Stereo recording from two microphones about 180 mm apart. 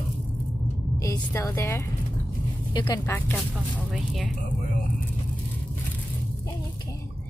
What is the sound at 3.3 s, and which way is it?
A woman's voice, centre (ahead or behind).